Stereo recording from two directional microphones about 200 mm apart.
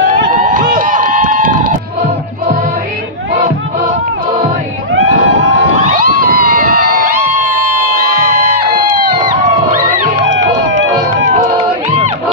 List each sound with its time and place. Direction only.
0.0 s run: 40° right (ahead or behind)
4.9 s screaming: 80° right
5.9 s music: 45° right (ahead or behind)
6.4 s a sound: 45° right (ahead or behind)
10.2 s run: 65° right (ahead or behind)